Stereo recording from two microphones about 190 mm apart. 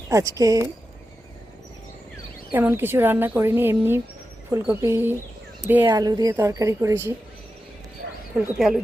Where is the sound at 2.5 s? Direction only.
10° right (ahead or behind).